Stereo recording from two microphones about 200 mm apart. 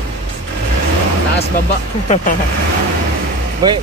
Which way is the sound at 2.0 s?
35° left (ahead or behind).